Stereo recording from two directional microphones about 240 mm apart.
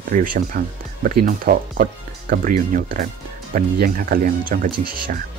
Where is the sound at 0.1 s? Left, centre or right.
Right.